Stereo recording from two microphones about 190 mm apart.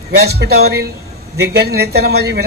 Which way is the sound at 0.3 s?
55° right (ahead or behind).